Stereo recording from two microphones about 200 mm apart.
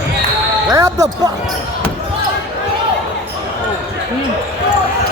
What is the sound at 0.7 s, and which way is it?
Basketball bounce, 15° right (ahead or behind).